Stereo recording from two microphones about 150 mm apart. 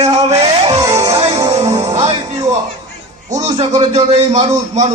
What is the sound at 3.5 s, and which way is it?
Speech, 50° right (ahead or behind).